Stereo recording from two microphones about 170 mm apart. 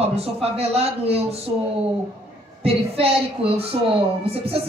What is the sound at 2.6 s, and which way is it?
A woman's voice, 35° right (ahead or behind).